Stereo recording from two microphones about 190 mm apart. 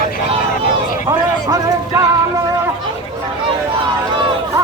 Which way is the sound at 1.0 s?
15° right (ahead or behind).